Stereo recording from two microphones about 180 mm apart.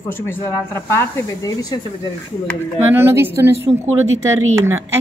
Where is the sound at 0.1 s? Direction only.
15° left (ahead or behind).